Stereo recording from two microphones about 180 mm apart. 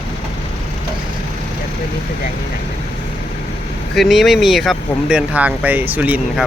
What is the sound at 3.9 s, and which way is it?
Speech, centre (ahead or behind).